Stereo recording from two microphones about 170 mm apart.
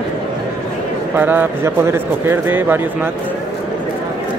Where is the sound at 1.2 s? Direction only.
10° right (ahead or behind).